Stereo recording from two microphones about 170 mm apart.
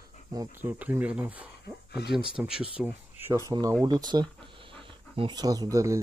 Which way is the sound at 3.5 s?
20° right (ahead or behind).